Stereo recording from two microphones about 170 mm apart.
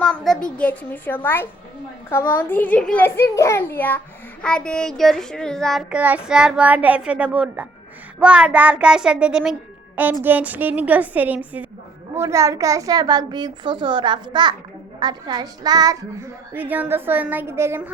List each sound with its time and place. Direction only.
0.0 s a woman's voice: 5° left (ahead or behind); by 16.3 s 20° right (ahead or behind)
16.6 s a child's voice: 10° right (ahead or behind)